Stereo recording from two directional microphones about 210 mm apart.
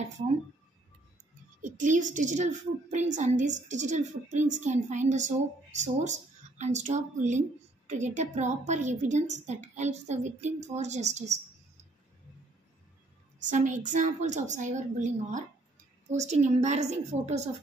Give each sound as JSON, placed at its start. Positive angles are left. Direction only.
{"t": 1.6, "sound": "a woman's voice", "side_deg": -35}
{"t": 13.4, "sound": "a woman's voice", "side_deg": -35}